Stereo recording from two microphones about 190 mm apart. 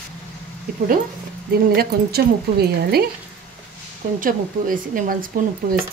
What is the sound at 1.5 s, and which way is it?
Speech, 55° right (ahead or behind).